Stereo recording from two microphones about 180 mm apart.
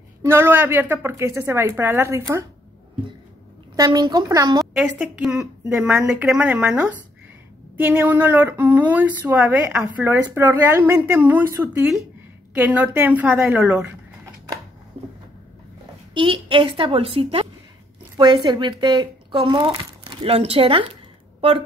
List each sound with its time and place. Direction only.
0.2 s speech: 15° right (ahead or behind)
3.7 s speech: 20° right (ahead or behind)
4.8 s speech: 5° right (ahead or behind)
15.0 s a sound: 30° right (ahead or behind)
16.1 s speech: 25° right (ahead or behind)